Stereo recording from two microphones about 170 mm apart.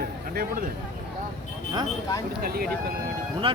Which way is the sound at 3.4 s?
35° right (ahead or behind).